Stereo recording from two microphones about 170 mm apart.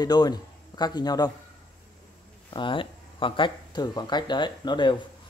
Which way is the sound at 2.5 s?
30° left (ahead or behind).